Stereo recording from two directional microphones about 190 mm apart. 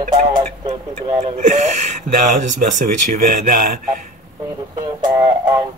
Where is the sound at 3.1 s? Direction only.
45° right (ahead or behind).